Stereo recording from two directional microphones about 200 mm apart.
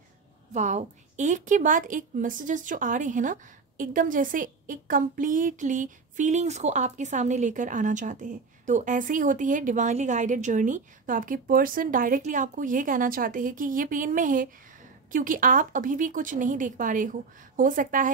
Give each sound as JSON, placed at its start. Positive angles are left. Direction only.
{"t": 0.5, "sound": "a woman's voice", "side_deg": -35}